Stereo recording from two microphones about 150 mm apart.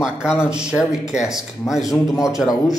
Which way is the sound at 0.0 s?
5° right (ahead or behind).